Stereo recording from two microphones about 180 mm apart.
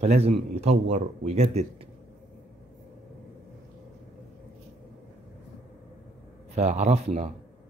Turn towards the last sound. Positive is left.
turn(degrees=-40)  # may be behind; listen again after turning